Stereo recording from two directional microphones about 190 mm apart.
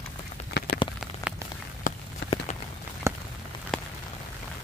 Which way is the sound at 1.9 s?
45° left (ahead or behind).